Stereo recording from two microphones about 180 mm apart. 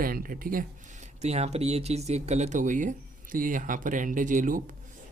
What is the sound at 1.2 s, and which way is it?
Speech, 35° right (ahead or behind).